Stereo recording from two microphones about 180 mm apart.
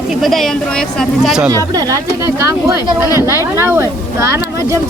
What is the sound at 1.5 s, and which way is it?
Speech, 20° right (ahead or behind).